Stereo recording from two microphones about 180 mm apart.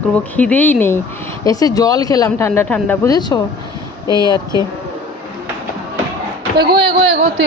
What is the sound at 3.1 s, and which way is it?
Speech, 20° left (ahead or behind).